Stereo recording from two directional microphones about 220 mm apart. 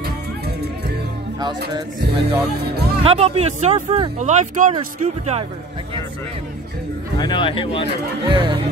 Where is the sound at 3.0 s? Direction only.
30° right (ahead or behind).